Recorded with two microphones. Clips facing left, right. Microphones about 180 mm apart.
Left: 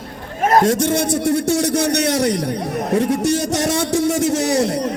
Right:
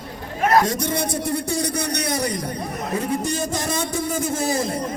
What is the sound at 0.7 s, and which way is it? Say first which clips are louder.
A man's voice: left 7 dB; 80° left.